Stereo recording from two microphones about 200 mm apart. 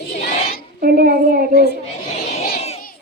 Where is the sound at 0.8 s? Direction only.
45° right (ahead or behind).